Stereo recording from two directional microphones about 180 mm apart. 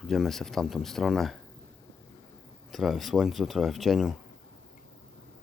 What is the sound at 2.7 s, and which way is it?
Speech, centre (ahead or behind).